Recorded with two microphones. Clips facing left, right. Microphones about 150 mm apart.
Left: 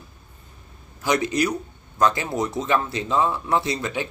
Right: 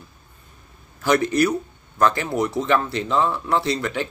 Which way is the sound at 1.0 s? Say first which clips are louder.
Right 3 dB; 15° left (ahead or behind).